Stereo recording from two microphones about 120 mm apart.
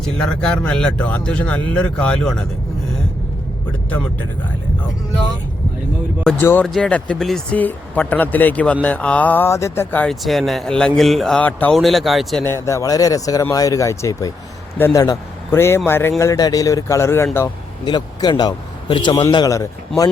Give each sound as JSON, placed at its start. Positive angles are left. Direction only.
{"t": 0.0, "sound": "speech", "side_deg": 5}
{"t": 6.4, "sound": "speech", "side_deg": 15}
{"t": 6.7, "sound": "a man's voice", "side_deg": 5}
{"t": 10.1, "sound": "a man's voice", "side_deg": 0}
{"t": 11.7, "sound": "a man's voice", "side_deg": 0}
{"t": 12.5, "sound": "a man's voice", "side_deg": 25}
{"t": 17.8, "sound": "a man's voice", "side_deg": 40}